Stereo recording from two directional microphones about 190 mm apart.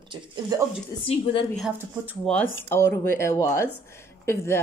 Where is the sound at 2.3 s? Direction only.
Centre (ahead or behind).